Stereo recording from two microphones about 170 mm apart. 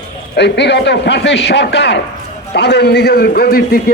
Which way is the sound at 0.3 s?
85° left.